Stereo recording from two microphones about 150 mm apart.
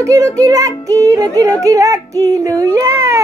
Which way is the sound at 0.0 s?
20° right (ahead or behind).